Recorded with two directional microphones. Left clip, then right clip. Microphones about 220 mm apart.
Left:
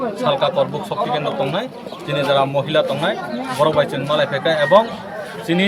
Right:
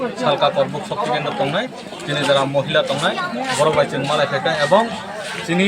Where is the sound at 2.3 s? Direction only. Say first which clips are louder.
Even; 25° left (ahead or behind).